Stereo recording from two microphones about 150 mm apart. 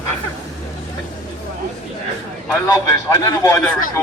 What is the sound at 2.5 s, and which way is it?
A man's voice, 20° left (ahead or behind).